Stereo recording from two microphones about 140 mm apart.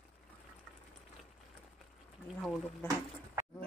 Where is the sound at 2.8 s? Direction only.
15° left (ahead or behind).